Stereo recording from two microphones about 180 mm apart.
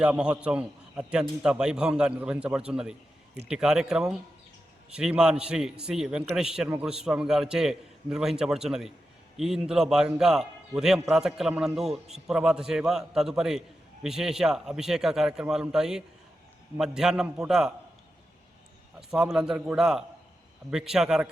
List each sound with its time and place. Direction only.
0.0 s a man's voice: 5° right (ahead or behind)
18.9 s a man's voice: 5° right (ahead or behind)